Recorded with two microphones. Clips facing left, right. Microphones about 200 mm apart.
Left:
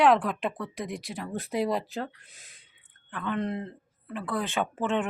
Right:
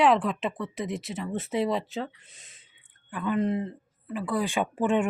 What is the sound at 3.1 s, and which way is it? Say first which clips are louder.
Speech: right 4 dB; 10° right (ahead or behind).